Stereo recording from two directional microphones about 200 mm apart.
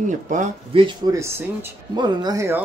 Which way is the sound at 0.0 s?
40° right (ahead or behind).